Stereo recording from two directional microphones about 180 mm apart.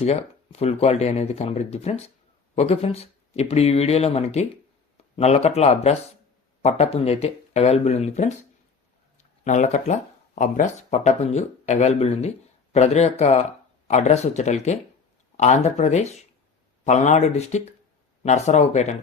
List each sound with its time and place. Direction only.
0.0 s speech: 35° left (ahead or behind)